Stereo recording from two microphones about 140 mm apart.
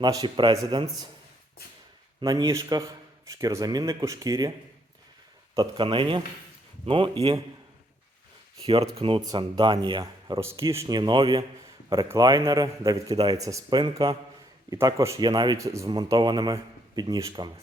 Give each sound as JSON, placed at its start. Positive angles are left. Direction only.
{"t": 0.0, "sound": "a man's voice", "side_deg": -30}
{"t": 2.2, "sound": "a man's voice", "side_deg": -30}
{"t": 5.5, "sound": "a man's voice", "side_deg": -35}
{"t": 8.6, "sound": "a man's voice", "side_deg": -40}
{"t": 10.4, "sound": "a man's voice", "side_deg": -20}